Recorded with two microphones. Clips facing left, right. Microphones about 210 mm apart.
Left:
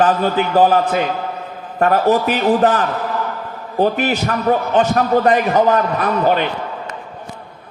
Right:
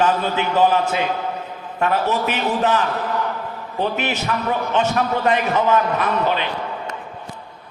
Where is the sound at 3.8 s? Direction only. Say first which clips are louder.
Left 6 dB; 35° left (ahead or behind).